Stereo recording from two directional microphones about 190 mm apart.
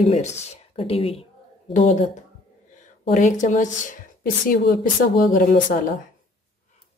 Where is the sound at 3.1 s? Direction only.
40° left (ahead or behind).